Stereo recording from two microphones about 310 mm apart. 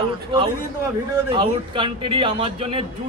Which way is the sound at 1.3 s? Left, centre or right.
Centre.